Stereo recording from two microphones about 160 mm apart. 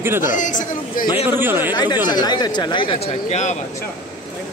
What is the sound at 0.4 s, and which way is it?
Speech, 55° left (ahead or behind).